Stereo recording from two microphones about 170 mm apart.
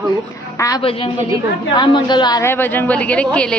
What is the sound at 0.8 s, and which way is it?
A woman's voice, 35° left (ahead or behind).